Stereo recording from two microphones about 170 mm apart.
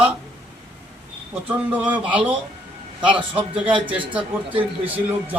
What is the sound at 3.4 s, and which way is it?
Speech, 30° right (ahead or behind).